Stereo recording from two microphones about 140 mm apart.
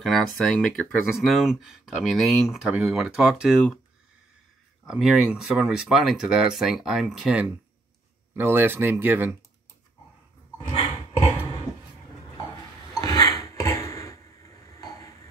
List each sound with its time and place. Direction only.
0.0 s speech: centre (ahead or behind)
4.8 s speech: centre (ahead or behind)
12.9 s a sound: 30° left (ahead or behind)